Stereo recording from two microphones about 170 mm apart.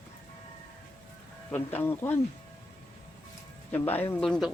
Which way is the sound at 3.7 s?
10° left (ahead or behind).